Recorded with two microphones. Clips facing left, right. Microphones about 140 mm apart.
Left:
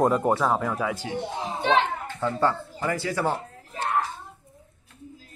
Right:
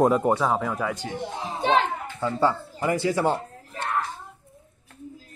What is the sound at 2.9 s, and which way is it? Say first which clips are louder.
Speech: right 3 dB; 20° right (ahead or behind).